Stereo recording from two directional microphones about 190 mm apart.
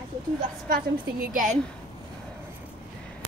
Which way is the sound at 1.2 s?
45° right (ahead or behind).